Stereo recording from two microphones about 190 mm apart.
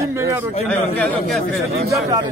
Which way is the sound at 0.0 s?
15° right (ahead or behind).